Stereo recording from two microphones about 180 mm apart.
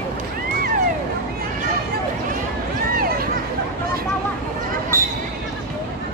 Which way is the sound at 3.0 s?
55° right (ahead or behind).